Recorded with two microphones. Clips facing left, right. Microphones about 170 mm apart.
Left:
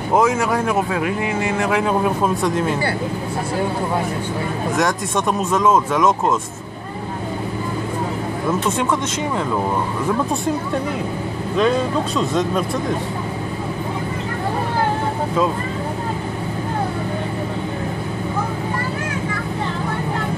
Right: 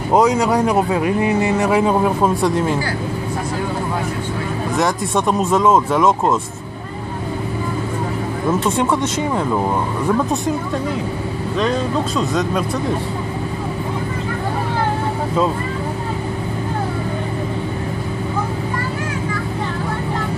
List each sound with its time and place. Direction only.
0.1 s speech: 15° right (ahead or behind)
4.8 s speech: 10° right (ahead or behind)
12.2 s speech: centre (ahead or behind)